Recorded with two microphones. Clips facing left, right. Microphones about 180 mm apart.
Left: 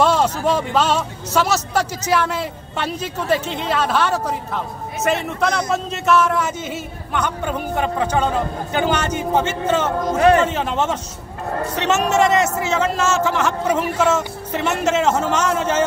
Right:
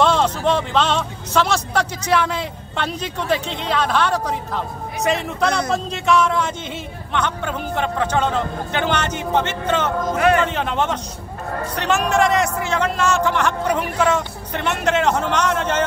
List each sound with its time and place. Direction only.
0.0 s a man's voice: 5° left (ahead or behind)
9.8 s a man's voice: 30° left (ahead or behind)
10.4 s a man's voice: 5° left (ahead or behind)